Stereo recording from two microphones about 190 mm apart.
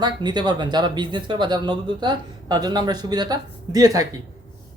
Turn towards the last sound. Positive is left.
turn(degrees=-20)  # may be behind; listen again after turning